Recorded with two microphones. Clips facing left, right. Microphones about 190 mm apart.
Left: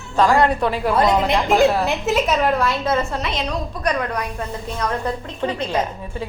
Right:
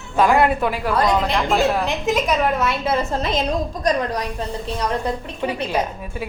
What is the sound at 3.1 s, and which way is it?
Speech, 40° right (ahead or behind).